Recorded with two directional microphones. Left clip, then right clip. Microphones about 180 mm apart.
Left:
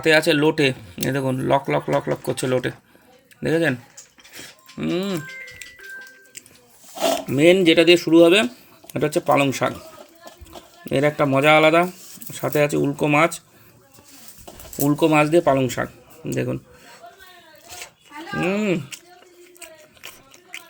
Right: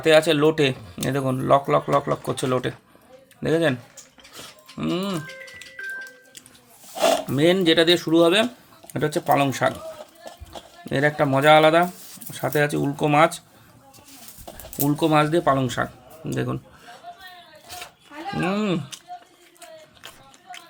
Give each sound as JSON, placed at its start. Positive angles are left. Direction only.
{"t": 0.0, "sound": "speech", "side_deg": -5}
{"t": 4.8, "sound": "speech", "side_deg": -10}
{"t": 7.0, "sound": "speech", "side_deg": 0}
{"t": 10.8, "sound": "speech", "side_deg": -5}
{"t": 14.8, "sound": "speech", "side_deg": 0}
{"t": 18.3, "sound": "speech", "side_deg": -10}
{"t": 19.6, "sound": "biting", "side_deg": 0}